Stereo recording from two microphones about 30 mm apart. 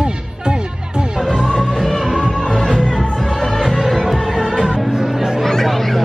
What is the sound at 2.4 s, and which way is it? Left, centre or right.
Music, centre.